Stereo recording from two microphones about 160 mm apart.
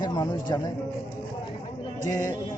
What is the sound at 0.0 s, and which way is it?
Speech, 25° left (ahead or behind).